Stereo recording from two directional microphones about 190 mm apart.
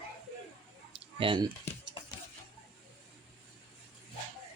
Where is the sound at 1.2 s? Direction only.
25° right (ahead or behind).